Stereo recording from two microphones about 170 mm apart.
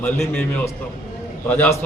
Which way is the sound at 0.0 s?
10° left (ahead or behind).